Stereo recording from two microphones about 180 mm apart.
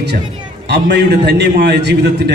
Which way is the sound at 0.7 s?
70° right (ahead or behind).